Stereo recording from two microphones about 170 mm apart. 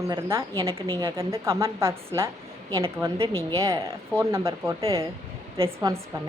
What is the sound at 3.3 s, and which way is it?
A woman's voice, 20° right (ahead or behind).